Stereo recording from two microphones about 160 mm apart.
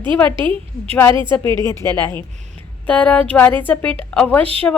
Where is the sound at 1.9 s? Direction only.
10° left (ahead or behind).